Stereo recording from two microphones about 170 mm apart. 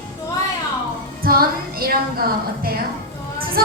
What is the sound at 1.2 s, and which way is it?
A woman's voice, 60° right (ahead or behind).